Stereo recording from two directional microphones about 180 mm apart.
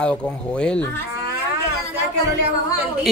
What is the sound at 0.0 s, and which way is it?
Speech, 5° left (ahead or behind).